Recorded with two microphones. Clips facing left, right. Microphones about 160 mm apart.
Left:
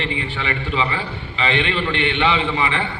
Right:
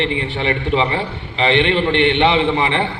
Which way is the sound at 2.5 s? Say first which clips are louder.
Right 4 dB; 30° right (ahead or behind).